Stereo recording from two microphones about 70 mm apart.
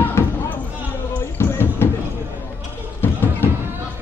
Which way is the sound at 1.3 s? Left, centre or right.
Left.